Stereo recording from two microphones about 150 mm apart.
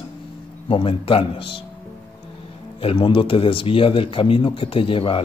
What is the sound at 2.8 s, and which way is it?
A man's voice, 35° left (ahead or behind).